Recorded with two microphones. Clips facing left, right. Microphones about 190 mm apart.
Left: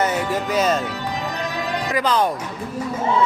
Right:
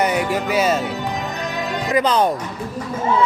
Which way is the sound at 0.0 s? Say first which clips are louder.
Right 2 dB; 15° right (ahead or behind).